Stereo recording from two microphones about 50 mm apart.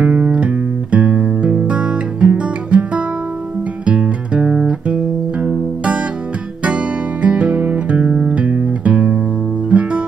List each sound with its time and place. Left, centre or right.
0.0 s music: right
6.6 s guitar: right
9.7 s music: right